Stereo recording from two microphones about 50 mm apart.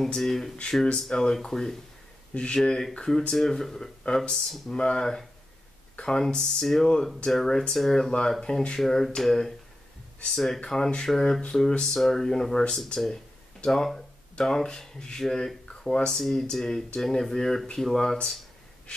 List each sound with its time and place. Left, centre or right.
0.0 s speech: centre
2.3 s speech: left
4.7 s speech: centre
18.9 s breathing: centre